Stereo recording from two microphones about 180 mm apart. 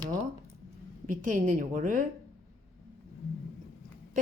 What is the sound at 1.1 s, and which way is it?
Speech, 45° right (ahead or behind).